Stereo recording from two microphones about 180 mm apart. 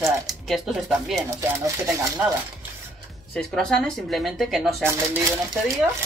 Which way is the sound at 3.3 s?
5° left (ahead or behind).